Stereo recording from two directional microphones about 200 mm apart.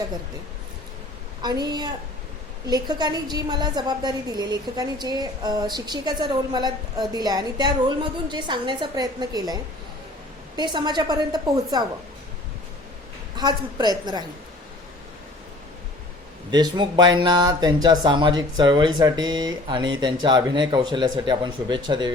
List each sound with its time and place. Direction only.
1.4 s a woman's voice: 20° right (ahead or behind)
10.6 s a woman's voice: 20° right (ahead or behind)
13.3 s a woman's voice: 20° right (ahead or behind)
16.5 s a woman's voice: 20° right (ahead or behind)